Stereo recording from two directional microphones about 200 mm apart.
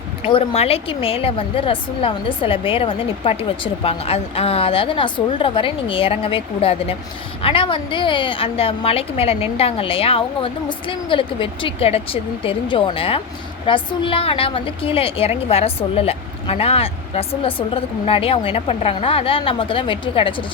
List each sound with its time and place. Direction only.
0.3 s a woman's voice: 30° left (ahead or behind)